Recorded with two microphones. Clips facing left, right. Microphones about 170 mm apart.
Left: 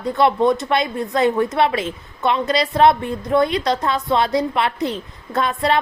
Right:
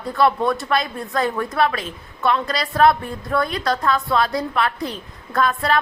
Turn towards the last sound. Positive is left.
turn(degrees=20)  # may be behind; listen again after turning